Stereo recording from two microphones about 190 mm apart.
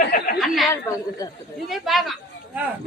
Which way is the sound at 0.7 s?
15° left (ahead or behind).